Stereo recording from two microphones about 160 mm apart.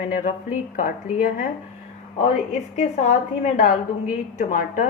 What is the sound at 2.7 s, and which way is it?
A woman's voice, 45° left (ahead or behind).